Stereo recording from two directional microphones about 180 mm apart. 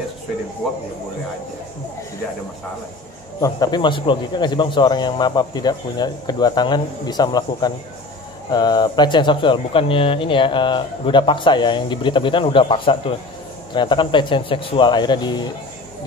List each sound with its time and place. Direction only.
3.3 s speech: 20° left (ahead or behind)